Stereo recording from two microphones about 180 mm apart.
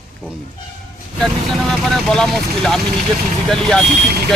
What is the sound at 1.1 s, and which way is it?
Speech, centre (ahead or behind).